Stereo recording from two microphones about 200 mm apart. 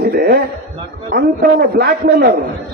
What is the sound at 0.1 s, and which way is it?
A man's voice, 50° right (ahead or behind).